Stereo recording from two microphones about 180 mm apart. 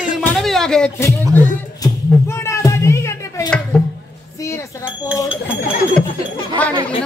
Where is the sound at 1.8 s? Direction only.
15° left (ahead or behind).